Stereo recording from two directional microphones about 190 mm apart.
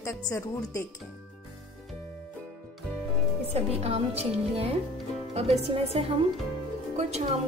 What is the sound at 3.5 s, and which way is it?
A woman's voice, 30° right (ahead or behind).